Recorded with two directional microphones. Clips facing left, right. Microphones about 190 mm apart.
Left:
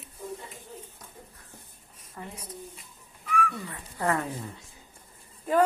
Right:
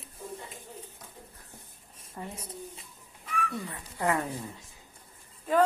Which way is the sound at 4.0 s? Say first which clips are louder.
Left 1 dB; 20° right (ahead or behind).